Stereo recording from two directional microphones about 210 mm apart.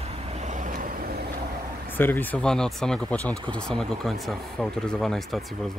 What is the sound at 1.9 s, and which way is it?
Speech, 10° left (ahead or behind).